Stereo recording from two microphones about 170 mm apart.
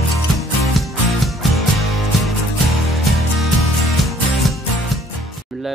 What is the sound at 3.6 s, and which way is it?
Music, centre (ahead or behind).